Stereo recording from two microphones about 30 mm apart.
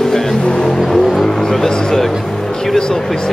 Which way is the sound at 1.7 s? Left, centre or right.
Left.